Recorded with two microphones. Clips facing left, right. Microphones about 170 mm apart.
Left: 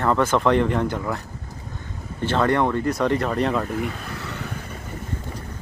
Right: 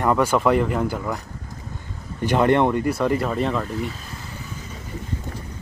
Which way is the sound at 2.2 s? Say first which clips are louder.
Right 3 dB; 15° right (ahead or behind).